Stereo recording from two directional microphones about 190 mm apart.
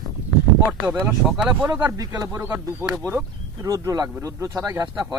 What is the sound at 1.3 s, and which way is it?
Speech, 5° right (ahead or behind).